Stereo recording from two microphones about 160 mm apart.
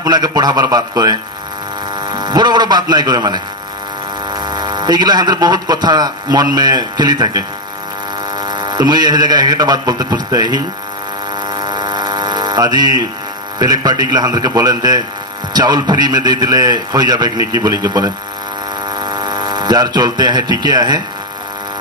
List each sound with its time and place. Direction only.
0.0 s a man's voice: 25° right (ahead or behind)
11.4 s hum: 25° right (ahead or behind)
13.6 s speech: 25° right (ahead or behind)